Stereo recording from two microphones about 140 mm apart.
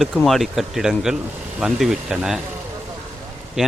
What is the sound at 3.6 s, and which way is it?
Speech, 5° right (ahead or behind).